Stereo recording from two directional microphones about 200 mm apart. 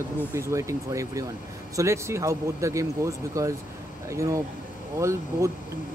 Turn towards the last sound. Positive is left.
turn(degrees=-15)  # may be behind; listen again after turning